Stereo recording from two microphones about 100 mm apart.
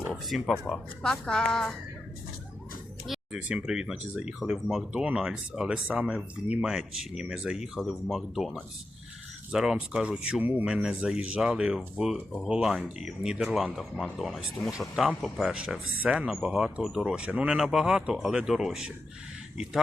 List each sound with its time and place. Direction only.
0.1 s speech: centre (ahead or behind)
3.1 s speech: 5° right (ahead or behind)
9.5 s speech: 10° right (ahead or behind)